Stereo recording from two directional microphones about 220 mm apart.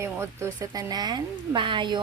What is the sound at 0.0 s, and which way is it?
Speech, 10° right (ahead or behind).